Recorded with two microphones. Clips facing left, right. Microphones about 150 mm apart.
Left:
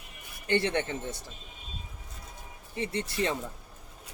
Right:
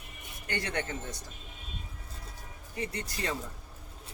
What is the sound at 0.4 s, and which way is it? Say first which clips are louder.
Speech: left 7 dB; 25° left (ahead or behind).